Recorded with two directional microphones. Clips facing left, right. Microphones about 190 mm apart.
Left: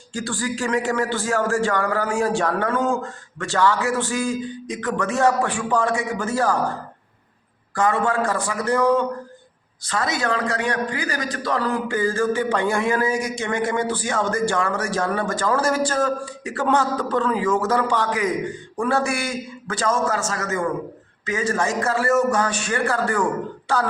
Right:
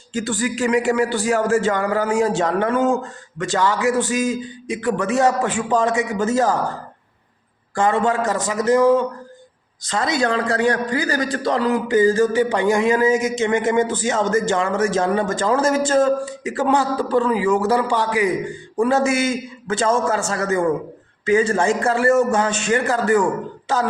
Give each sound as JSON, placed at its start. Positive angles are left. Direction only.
{"t": 0.1, "sound": "a man's voice", "side_deg": -20}
{"t": 7.8, "sound": "a man's voice", "side_deg": -25}
{"t": 9.8, "sound": "a man's voice", "side_deg": -25}